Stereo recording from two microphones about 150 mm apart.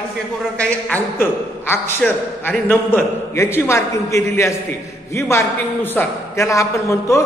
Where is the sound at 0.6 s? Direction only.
10° left (ahead or behind).